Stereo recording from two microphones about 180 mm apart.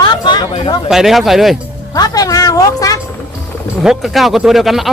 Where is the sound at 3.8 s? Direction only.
Centre (ahead or behind).